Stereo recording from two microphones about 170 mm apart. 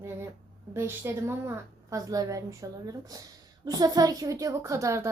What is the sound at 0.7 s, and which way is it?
A woman's voice, 15° right (ahead or behind).